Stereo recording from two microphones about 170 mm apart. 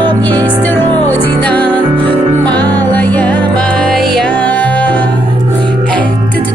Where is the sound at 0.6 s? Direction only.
10° left (ahead or behind).